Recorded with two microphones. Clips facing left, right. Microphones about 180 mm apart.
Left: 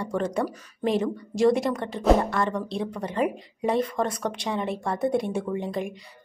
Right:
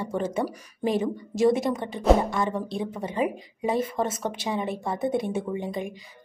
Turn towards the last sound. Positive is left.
turn(degrees=0)  # may be behind; listen again after turning